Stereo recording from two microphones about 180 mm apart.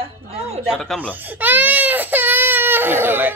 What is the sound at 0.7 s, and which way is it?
Speech, 5° left (ahead or behind).